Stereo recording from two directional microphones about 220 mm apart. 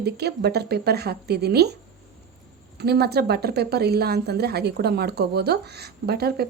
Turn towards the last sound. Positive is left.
turn(degrees=-45)  # may be behind; listen again after turning